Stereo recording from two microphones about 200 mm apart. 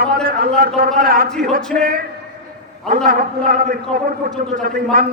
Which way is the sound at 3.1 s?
45° right (ahead or behind).